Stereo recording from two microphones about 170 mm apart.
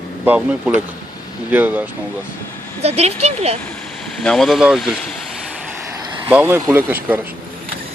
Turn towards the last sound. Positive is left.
turn(degrees=-15)  # may be behind; listen again after turning